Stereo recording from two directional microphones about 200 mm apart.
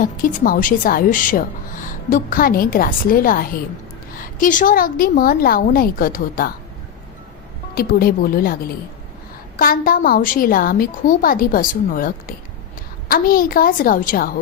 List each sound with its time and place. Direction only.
0.0 s a woman's voice: 40° left (ahead or behind)
7.8 s a woman's voice: 50° left (ahead or behind)
9.6 s a woman's voice: 45° left (ahead or behind)